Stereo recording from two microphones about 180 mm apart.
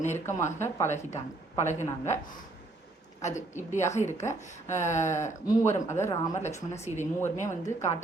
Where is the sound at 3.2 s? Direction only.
40° left (ahead or behind).